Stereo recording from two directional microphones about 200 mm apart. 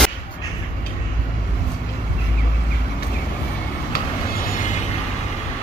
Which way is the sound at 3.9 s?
50° left (ahead or behind).